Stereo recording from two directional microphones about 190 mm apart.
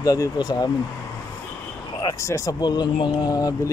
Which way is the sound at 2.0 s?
15° left (ahead or behind).